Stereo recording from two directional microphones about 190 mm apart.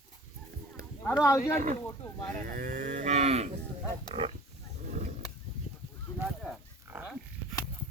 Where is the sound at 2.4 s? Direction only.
45° right (ahead or behind).